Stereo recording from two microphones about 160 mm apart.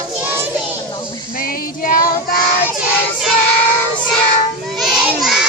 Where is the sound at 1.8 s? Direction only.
60° left (ahead or behind).